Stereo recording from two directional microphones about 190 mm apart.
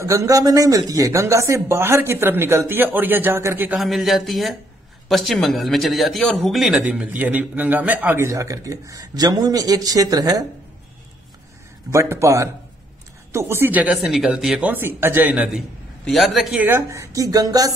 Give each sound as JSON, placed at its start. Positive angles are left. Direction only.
{"t": 0.0, "sound": "a man's voice", "side_deg": -15}
{"t": 11.9, "sound": "a man's voice", "side_deg": -15}